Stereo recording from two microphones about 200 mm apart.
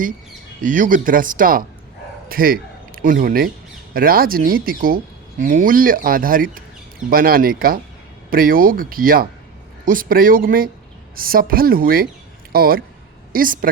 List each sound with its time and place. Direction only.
0.6 s speech: 40° right (ahead or behind)